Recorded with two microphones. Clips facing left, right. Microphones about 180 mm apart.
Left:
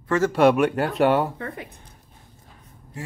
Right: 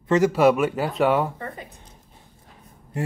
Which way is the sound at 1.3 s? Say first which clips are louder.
Left 2 dB; 70° left (ahead or behind).